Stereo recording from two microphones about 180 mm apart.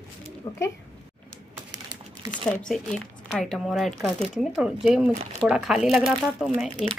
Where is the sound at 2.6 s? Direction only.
Centre (ahead or behind).